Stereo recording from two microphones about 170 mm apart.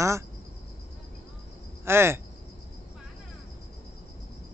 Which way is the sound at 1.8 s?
15° right (ahead or behind).